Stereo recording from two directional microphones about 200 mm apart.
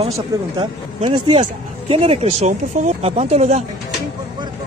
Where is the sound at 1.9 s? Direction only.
30° right (ahead or behind).